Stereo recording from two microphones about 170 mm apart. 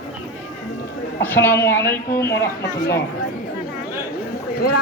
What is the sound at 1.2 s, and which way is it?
Music, 10° left (ahead or behind).